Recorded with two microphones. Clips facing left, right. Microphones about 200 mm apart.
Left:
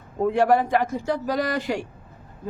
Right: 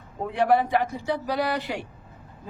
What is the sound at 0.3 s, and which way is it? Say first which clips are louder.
A man's voice: left 1 dB; 45° left (ahead or behind).